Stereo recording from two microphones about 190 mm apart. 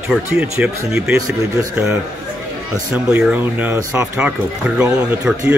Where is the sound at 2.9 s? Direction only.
10° right (ahead or behind).